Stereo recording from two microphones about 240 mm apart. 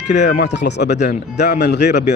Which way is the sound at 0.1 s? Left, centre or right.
Left.